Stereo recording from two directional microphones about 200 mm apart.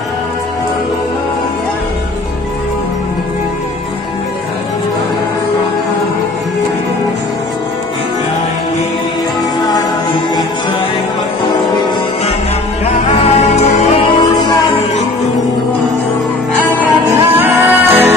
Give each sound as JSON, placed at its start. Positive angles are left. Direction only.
{"t": 12.8, "sound": "music", "side_deg": 30}
{"t": 17.3, "sound": "music", "side_deg": -10}